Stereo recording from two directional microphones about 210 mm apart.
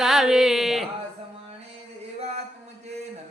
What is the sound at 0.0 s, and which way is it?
Carnatic music, centre (ahead or behind).